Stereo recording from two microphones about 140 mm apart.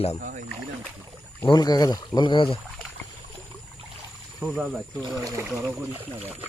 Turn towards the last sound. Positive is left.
turn(degrees=-25)  # may be behind; listen again after turning